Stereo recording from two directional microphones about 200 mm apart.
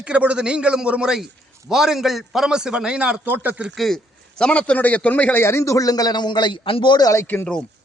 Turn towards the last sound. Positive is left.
turn(degrees=5)  # may be behind; listen again after turning